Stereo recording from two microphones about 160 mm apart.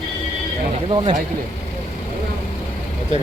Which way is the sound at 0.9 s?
30° right (ahead or behind).